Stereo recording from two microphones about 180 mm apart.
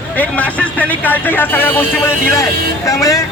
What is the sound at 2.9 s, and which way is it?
Speech, 20° left (ahead or behind).